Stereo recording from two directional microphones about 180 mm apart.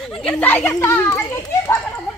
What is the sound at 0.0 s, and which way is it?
Children playing, 5° left (ahead or behind).